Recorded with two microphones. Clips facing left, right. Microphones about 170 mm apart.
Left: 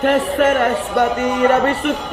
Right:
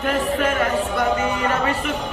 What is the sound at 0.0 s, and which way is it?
A man's voice, 70° left (ahead or behind).